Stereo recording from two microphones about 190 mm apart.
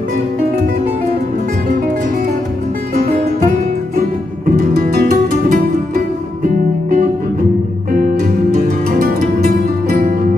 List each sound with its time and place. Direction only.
4.5 s music: 50° right (ahead or behind)
8.8 s music: 50° right (ahead or behind)